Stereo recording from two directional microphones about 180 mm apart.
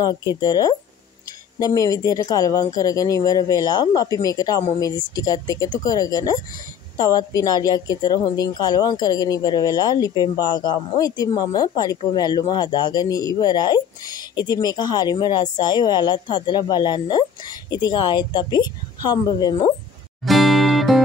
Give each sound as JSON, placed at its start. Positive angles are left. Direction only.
{"t": 0.0, "sound": "a woman's voice", "side_deg": 20}
{"t": 20.2, "sound": "music", "side_deg": 0}